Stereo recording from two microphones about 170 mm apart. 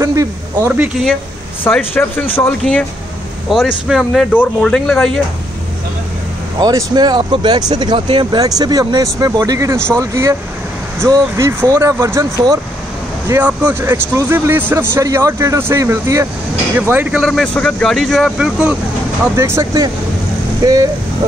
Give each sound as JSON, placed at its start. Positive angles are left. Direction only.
{"t": 0.0, "sound": "a man's voice", "side_deg": -15}
{"t": 1.6, "sound": "speech", "side_deg": 10}
{"t": 6.6, "sound": "a man's voice", "side_deg": -25}